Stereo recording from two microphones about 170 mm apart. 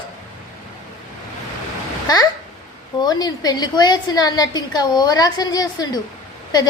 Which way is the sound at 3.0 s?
25° left (ahead or behind).